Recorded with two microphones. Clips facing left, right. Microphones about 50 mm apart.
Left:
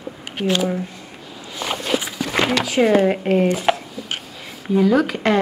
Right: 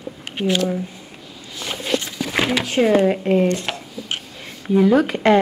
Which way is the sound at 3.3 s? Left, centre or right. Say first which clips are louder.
Left 1 dB; centre.